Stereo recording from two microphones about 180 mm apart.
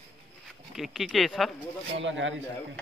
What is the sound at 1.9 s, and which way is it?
Speech, 90° right.